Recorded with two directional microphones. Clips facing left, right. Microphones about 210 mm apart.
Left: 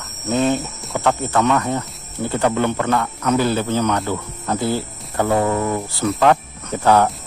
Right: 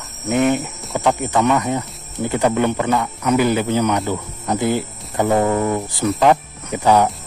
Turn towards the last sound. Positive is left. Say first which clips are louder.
# even
turn(degrees=-15)  # may be behind; listen again after turning